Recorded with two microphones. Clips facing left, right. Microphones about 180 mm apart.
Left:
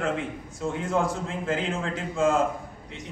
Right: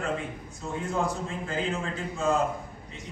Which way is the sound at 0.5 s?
90° left.